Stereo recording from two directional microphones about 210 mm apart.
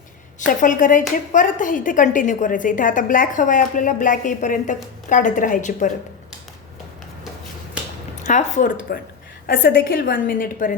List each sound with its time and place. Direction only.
0.3 s speech: 40° left (ahead or behind)
8.2 s a woman's voice: 35° left (ahead or behind)